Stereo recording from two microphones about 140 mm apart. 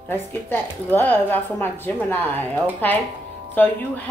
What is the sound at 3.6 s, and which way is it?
Speech, 10° left (ahead or behind).